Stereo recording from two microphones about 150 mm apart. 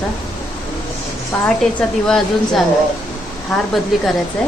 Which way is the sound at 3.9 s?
Centre (ahead or behind).